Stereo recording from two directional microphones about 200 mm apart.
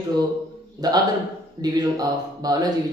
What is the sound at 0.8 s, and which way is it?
A man's voice, 20° right (ahead or behind).